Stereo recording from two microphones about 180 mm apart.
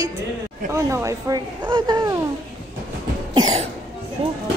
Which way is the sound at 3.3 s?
35° right (ahead or behind).